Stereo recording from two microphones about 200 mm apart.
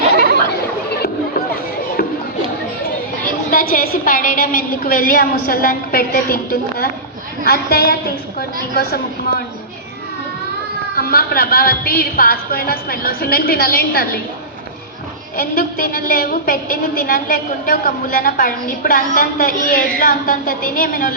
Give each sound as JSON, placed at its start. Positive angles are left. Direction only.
{"t": 0.1, "sound": "a sound", "side_deg": -55}
{"t": 0.9, "sound": "chatter", "side_deg": 55}
{"t": 2.0, "sound": "a sound", "side_deg": 45}
{"t": 3.5, "sound": "a woman's voice", "side_deg": 45}
{"t": 10.9, "sound": "a woman's voice", "side_deg": 50}
{"t": 15.4, "sound": "a woman's voice", "side_deg": 45}